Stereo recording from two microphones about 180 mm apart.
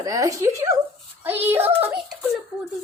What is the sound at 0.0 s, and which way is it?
Speech, 20° right (ahead or behind).